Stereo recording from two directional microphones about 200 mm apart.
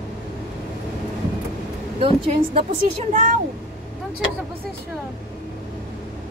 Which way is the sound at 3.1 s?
40° right (ahead or behind).